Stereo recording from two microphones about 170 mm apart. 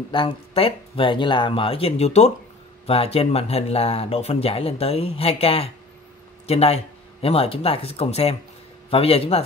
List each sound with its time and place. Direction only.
0.1 s speech: 30° left (ahead or behind)